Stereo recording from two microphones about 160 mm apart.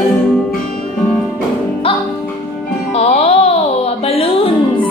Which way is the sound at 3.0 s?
40° left (ahead or behind).